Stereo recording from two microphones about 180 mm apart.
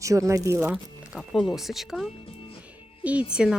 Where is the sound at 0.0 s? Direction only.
15° right (ahead or behind).